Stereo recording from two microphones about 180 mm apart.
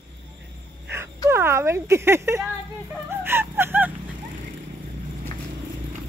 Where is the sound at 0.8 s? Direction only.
15° right (ahead or behind).